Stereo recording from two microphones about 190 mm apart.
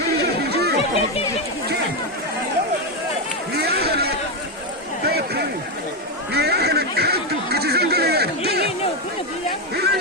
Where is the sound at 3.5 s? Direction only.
55° right (ahead or behind).